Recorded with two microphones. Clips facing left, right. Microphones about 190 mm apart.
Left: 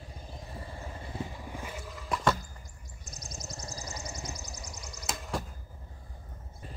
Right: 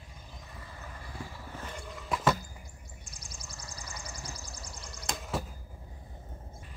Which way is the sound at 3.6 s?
35° left (ahead or behind).